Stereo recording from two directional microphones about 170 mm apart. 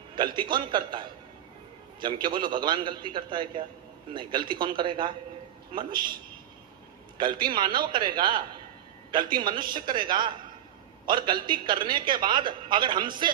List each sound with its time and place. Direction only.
0.2 s a man's voice: 30° right (ahead or behind)
7.2 s a man's voice: 25° right (ahead or behind)